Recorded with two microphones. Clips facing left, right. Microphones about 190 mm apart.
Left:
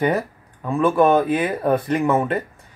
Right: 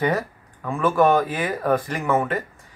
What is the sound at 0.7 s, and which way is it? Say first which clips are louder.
Speech: left 2 dB; 20° left (ahead or behind).